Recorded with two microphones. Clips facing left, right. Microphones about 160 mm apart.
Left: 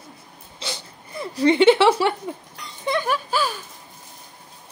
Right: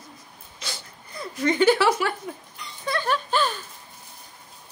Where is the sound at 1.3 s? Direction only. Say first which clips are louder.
Left 5 dB; 30° left (ahead or behind).